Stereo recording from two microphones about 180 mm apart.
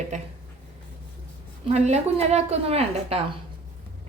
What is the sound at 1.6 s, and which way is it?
Speech, 40° right (ahead or behind).